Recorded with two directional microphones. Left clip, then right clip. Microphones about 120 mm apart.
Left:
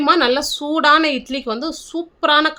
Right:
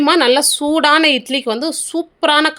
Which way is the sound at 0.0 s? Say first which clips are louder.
Right 3 dB; 35° right (ahead or behind).